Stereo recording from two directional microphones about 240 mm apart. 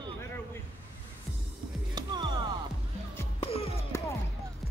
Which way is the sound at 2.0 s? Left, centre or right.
Centre.